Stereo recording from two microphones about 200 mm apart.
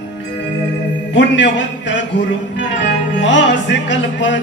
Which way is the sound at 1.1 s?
65° left (ahead or behind).